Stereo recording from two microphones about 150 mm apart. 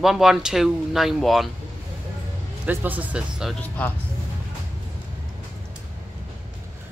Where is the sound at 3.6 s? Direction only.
10° left (ahead or behind).